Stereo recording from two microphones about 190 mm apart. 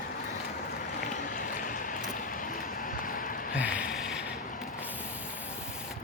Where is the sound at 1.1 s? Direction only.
45° left (ahead or behind).